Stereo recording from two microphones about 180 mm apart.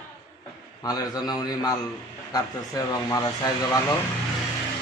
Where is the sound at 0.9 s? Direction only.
20° left (ahead or behind).